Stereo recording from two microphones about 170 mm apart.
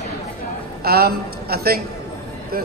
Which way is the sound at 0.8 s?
65° right (ahead or behind).